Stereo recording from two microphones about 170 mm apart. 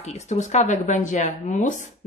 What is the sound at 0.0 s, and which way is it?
Speech, 40° left (ahead or behind).